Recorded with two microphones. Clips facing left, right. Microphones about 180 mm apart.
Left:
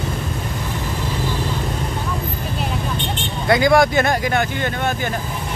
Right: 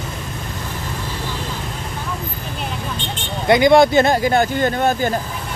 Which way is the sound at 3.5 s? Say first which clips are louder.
Right 3 dB; 20° right (ahead or behind).